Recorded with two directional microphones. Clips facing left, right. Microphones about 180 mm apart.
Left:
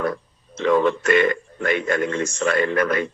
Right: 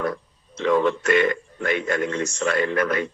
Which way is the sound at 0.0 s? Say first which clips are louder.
Left 2 dB; 55° left (ahead or behind).